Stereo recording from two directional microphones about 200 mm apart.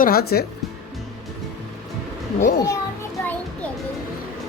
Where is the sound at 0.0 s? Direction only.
50° left (ahead or behind).